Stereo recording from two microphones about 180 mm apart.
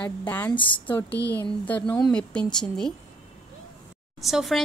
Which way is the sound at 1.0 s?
65° left (ahead or behind).